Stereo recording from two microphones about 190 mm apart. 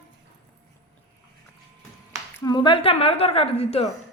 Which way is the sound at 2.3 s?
20° left (ahead or behind).